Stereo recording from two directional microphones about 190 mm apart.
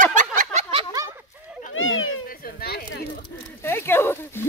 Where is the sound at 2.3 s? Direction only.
50° left (ahead or behind).